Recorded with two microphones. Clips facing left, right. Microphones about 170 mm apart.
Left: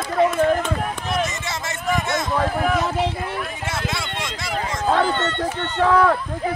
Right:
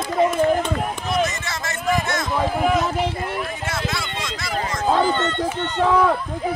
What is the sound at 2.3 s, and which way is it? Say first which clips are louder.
Speech: right 2 dB; 5° right (ahead or behind).